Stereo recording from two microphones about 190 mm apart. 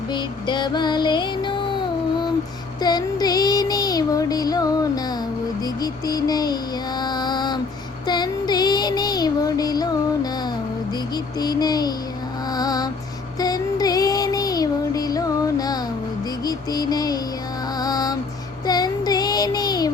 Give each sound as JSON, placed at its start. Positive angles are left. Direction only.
{"t": 0.1, "sound": "music", "side_deg": 25}
{"t": 2.8, "sound": "child singing", "side_deg": 20}
{"t": 5.6, "sound": "music", "side_deg": 20}
{"t": 8.0, "sound": "child singing", "side_deg": 20}
{"t": 11.3, "sound": "a child's voice", "side_deg": 20}
{"t": 12.5, "sound": "music", "side_deg": 20}
{"t": 13.4, "sound": "child singing", "side_deg": 20}
{"t": 16.4, "sound": "a sound", "side_deg": 20}
{"t": 17.7, "sound": "music", "side_deg": 20}
{"t": 18.6, "sound": "child singing", "side_deg": 20}